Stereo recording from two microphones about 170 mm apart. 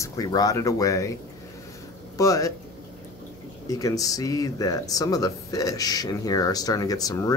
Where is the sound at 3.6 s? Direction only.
20° left (ahead or behind).